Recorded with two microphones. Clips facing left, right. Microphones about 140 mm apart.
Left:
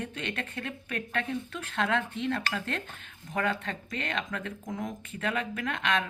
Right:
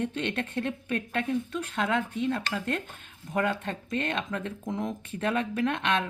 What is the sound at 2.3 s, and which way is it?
Speech, 10° right (ahead or behind).